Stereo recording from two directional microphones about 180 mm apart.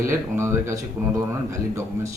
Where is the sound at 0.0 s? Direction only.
15° right (ahead or behind).